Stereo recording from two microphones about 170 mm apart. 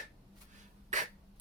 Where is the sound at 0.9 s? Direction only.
45° right (ahead or behind).